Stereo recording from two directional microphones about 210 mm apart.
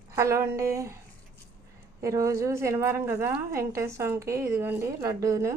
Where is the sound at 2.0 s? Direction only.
15° right (ahead or behind).